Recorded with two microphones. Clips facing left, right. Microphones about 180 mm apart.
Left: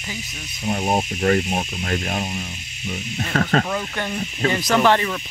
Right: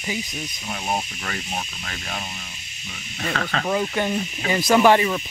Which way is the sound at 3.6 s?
15° right (ahead or behind).